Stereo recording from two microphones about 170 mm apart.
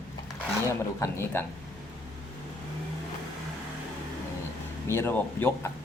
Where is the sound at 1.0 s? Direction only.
15° left (ahead or behind).